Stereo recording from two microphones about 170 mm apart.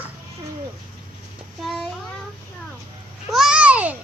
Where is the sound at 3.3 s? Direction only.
5° right (ahead or behind).